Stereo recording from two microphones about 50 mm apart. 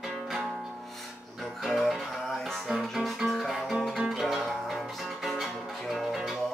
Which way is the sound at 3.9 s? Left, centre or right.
Centre.